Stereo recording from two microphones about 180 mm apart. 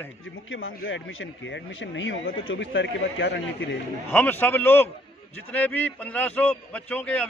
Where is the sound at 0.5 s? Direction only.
90° left.